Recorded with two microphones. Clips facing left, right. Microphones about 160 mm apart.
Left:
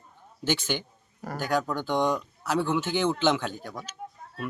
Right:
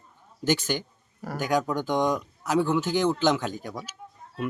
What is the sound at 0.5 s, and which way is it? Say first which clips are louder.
Speech: right 1 dB; 40° right (ahead or behind).